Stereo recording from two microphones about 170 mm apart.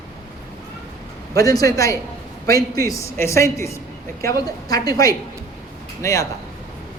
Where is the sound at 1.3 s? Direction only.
20° left (ahead or behind).